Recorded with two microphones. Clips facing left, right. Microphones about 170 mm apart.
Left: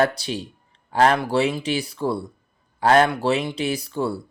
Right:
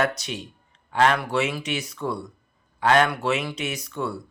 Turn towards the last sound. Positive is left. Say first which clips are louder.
# left 5 dB
turn(degrees=30)  # may be behind; listen again after turning